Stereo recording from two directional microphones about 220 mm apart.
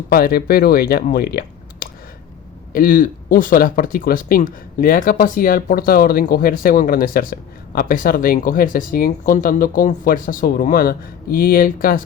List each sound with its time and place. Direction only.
0.1 s speech: 45° left (ahead or behind)